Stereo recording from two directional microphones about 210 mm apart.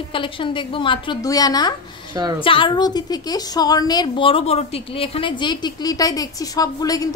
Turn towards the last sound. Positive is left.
turn(degrees=15)  # may be behind; listen again after turning